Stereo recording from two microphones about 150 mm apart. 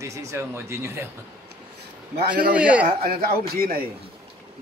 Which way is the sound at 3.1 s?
90° right.